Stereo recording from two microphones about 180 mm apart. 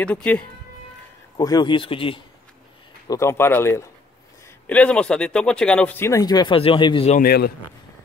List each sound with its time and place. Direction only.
0.0 s speech: 5° left (ahead or behind)
1.3 s speech: 25° left (ahead or behind)
3.1 s speech: 15° left (ahead or behind)
7.1 s a man's voice: 55° left (ahead or behind)